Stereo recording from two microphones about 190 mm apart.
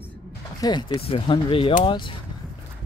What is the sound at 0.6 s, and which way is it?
Speech, 25° left (ahead or behind).